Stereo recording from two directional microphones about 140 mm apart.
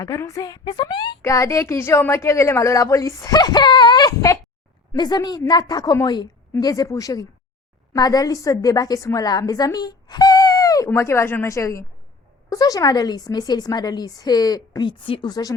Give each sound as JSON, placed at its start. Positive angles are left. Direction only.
{"t": 0.0, "sound": "a woman's voice", "side_deg": 25}
{"t": 1.2, "sound": "a woman's voice", "side_deg": 20}